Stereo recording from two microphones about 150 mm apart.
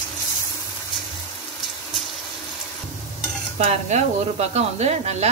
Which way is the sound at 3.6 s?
45° right (ahead or behind).